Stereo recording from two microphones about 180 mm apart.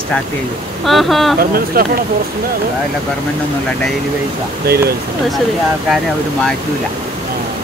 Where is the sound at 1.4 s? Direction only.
55° right (ahead or behind).